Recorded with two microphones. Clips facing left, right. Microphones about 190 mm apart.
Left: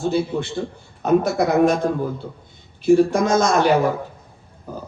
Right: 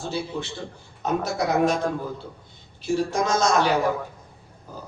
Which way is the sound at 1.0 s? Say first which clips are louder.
Left 7 dB; 55° left (ahead or behind).